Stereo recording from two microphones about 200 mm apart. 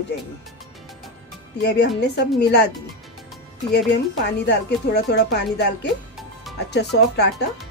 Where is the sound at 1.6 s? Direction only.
55° left (ahead or behind).